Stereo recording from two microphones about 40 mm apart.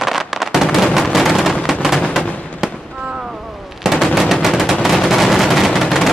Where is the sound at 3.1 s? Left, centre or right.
Centre.